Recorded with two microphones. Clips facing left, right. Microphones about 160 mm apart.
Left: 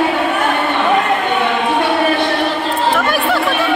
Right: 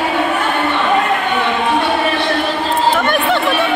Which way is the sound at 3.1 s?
Centre (ahead or behind).